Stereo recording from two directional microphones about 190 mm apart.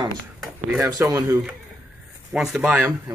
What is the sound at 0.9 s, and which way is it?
Speech, 15° right (ahead or behind).